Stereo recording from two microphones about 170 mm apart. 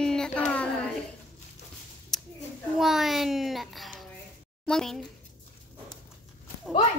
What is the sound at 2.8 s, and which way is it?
A child's voice, centre (ahead or behind).